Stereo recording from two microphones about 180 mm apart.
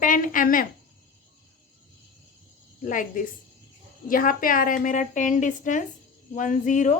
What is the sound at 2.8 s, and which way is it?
A woman's voice, 45° left (ahead or behind).